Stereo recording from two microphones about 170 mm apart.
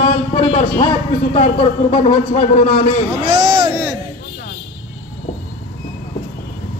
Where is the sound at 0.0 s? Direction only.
30° left (ahead or behind).